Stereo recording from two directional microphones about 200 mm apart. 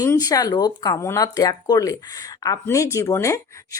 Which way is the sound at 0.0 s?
20° left (ahead or behind).